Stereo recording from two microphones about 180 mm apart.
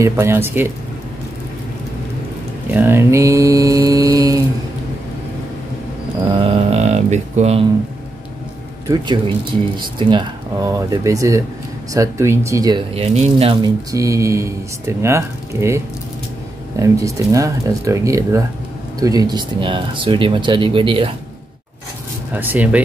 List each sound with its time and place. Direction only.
0.0 s speech: 15° right (ahead or behind)
2.7 s speech: 10° right (ahead or behind)
6.3 s mantra: 35° right (ahead or behind)
8.8 s speech: 25° right (ahead or behind)
12.9 s speech: 35° right (ahead or behind)
13.9 s speech: 15° right (ahead or behind)
22.3 s speech: 10° right (ahead or behind)